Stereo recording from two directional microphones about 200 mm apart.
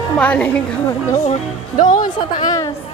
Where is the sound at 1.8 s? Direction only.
40° left (ahead or behind).